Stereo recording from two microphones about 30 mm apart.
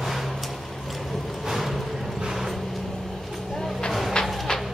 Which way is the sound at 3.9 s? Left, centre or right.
Centre.